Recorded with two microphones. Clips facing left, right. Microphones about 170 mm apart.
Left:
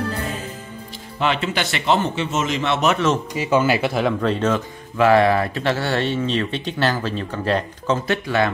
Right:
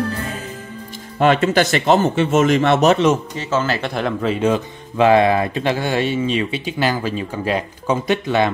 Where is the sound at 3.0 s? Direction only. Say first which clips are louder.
Right 4 dB; 15° right (ahead or behind).